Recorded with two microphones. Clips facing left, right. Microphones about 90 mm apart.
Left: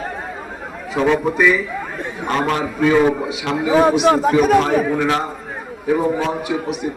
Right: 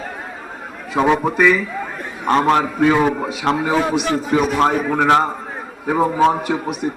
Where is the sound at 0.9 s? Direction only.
20° right (ahead or behind).